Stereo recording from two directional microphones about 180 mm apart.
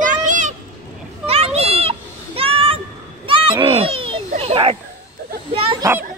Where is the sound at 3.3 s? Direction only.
30° right (ahead or behind).